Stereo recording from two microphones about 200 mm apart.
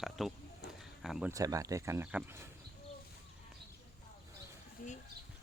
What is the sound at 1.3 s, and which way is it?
Speech, 15° right (ahead or behind).